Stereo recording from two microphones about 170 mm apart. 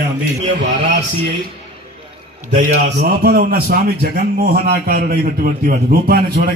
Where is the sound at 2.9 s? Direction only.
65° right (ahead or behind).